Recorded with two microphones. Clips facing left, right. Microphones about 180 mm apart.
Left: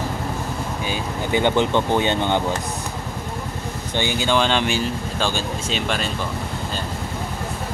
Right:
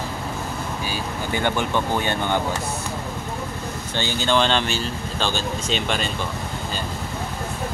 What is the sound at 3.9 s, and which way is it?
Speech, 10° left (ahead or behind).